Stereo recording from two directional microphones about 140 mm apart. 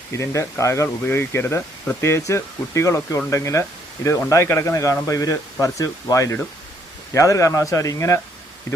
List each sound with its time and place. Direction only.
0.1 s speech: 20° left (ahead or behind)